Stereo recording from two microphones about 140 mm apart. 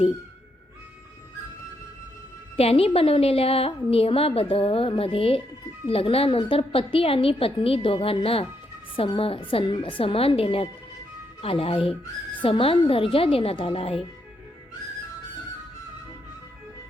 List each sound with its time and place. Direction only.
2.6 s a woman's voice: 45° left (ahead or behind)